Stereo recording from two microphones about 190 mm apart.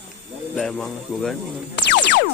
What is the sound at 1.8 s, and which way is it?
Music, 65° left (ahead or behind).